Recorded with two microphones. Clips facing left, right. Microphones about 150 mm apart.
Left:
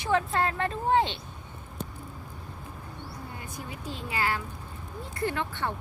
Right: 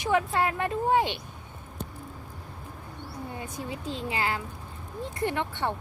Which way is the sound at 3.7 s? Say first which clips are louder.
Right 4 dB; 25° right (ahead or behind).